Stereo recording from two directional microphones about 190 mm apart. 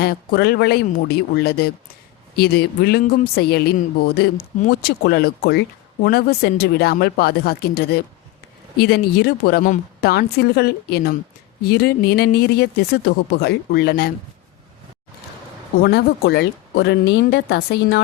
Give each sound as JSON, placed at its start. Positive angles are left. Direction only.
{"t": 0.0, "sound": "speech", "side_deg": 55}
{"t": 15.8, "sound": "speech", "side_deg": 60}